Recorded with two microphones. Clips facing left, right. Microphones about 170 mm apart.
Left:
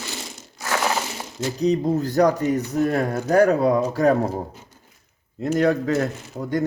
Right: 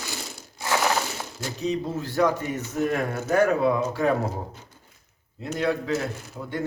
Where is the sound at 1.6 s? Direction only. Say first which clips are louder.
Left 7 dB; 40° left (ahead or behind).